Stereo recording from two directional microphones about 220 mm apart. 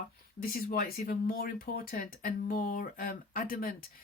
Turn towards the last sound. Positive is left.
turn(degrees=40)  # may be behind; listen again after turning